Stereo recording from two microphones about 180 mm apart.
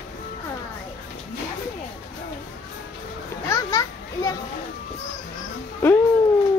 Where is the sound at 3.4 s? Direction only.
15° left (ahead or behind).